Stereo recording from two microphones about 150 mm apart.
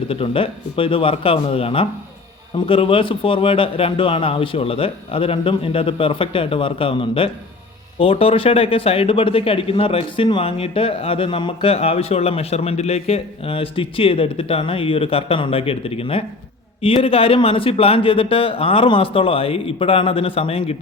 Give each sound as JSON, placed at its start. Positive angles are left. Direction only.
{"t": 0.1, "sound": "speech", "side_deg": 35}